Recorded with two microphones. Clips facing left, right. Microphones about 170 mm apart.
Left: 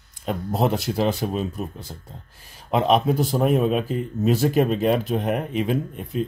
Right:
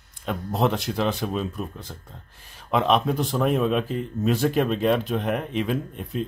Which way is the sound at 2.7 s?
40° left (ahead or behind).